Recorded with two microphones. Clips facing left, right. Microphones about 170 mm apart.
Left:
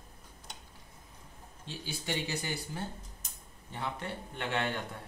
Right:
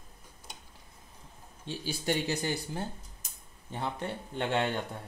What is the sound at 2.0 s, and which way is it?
Speech, 40° right (ahead or behind).